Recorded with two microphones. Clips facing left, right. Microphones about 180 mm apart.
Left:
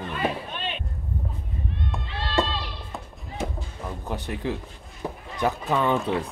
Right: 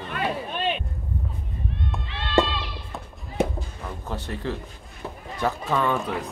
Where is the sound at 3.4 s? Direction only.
60° right (ahead or behind).